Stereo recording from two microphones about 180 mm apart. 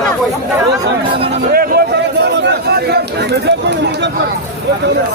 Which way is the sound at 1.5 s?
55° right (ahead or behind).